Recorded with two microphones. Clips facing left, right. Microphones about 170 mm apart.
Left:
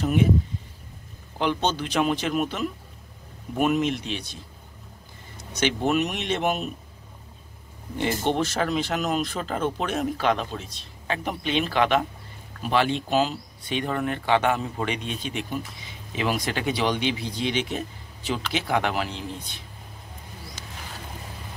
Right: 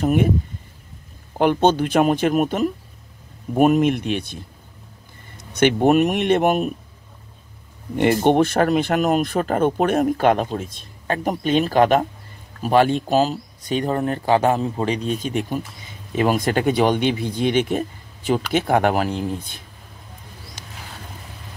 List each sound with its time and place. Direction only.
0.0 s speech: 50° right (ahead or behind)
1.4 s speech: 50° right (ahead or behind)
5.4 s speech: 55° right (ahead or behind)
7.9 s speech: 60° right (ahead or behind)